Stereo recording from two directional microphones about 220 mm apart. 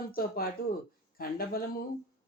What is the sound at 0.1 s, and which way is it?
Speech, 40° left (ahead or behind).